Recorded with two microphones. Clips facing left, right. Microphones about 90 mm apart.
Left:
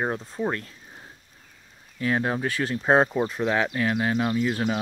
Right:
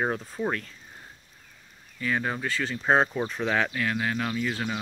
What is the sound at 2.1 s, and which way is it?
Speech, 25° left (ahead or behind).